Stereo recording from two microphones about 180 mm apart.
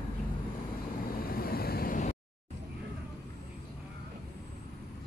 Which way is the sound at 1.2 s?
55° left (ahead or behind).